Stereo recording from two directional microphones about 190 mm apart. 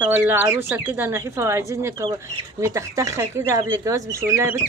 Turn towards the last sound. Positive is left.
turn(degrees=-15)  # may be behind; listen again after turning